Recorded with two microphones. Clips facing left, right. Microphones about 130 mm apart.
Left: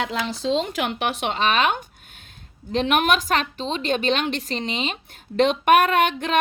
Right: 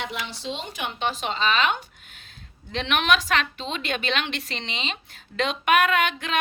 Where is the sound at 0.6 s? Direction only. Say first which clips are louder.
Left 4 dB; 90° left; by 4.9 s 45° left (ahead or behind).